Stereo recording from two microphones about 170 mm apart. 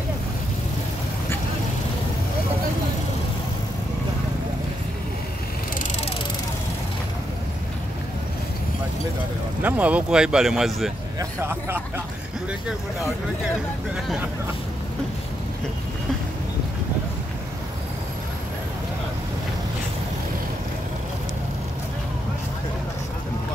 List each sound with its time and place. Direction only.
9.6 s speech: 10° right (ahead or behind)
11.1 s speech: 15° right (ahead or behind)